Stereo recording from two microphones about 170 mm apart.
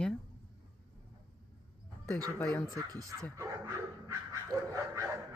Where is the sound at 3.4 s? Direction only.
15° right (ahead or behind).